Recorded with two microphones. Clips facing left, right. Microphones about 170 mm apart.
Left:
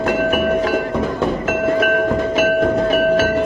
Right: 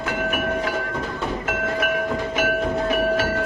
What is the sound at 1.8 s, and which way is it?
Train, 50° left (ahead or behind).